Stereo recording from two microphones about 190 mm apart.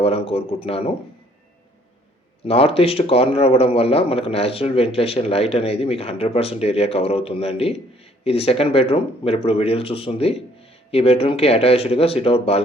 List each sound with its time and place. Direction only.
0.0 s a man's voice: 30° left (ahead or behind)
2.5 s a man's voice: 30° left (ahead or behind)